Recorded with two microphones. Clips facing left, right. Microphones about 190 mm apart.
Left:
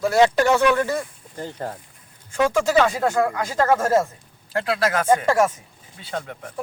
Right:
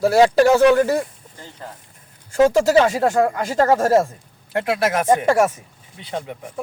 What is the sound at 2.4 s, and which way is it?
A man's voice, 25° right (ahead or behind).